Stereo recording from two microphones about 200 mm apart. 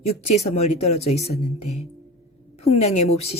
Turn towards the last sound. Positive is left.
turn(degrees=30)  # may be behind; listen again after turning